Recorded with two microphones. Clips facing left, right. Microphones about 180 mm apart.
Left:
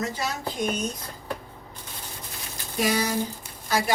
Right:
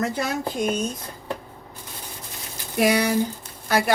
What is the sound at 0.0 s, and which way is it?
Speech, 55° right (ahead or behind).